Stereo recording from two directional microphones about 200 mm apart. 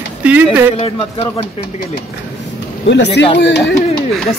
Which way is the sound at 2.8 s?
60° left (ahead or behind).